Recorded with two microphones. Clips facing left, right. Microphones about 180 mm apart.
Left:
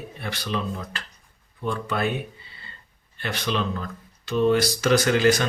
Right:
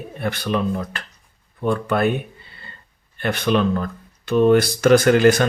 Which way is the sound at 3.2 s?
55° right (ahead or behind).